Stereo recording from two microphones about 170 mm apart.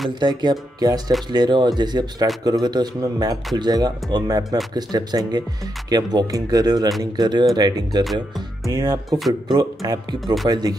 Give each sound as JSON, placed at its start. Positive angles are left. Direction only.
{"t": 0.2, "sound": "speech", "side_deg": -25}